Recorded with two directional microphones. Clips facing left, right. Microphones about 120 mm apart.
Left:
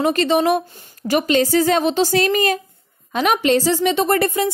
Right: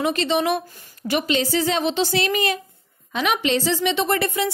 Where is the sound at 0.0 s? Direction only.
45° left (ahead or behind).